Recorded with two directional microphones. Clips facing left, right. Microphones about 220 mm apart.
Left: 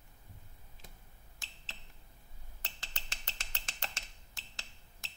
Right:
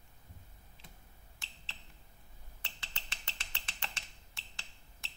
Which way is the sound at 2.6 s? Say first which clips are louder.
Left 2 dB; 45° left (ahead or behind).